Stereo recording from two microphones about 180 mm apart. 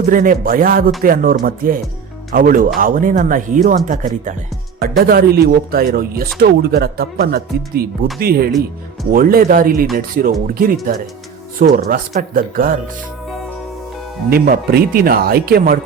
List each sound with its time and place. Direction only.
0.1 s speech: 50° right (ahead or behind)
4.8 s speech: 55° right (ahead or behind)
14.3 s speech: 55° right (ahead or behind)